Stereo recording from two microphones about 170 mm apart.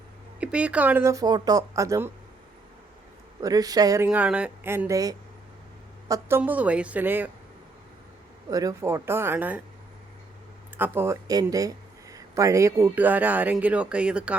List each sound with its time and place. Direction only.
0.3 s a man's voice: 5° right (ahead or behind)
3.4 s a man's voice: 20° right (ahead or behind)
8.4 s a man's voice: 20° right (ahead or behind)
10.8 s a man's voice: 10° right (ahead or behind)